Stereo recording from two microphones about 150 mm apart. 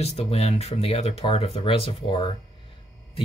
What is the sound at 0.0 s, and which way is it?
Speech, 45° left (ahead or behind).